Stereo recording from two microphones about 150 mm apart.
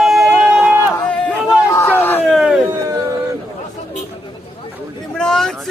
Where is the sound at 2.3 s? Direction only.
5° right (ahead or behind).